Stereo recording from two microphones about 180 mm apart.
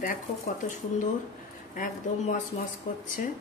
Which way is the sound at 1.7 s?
50° left (ahead or behind).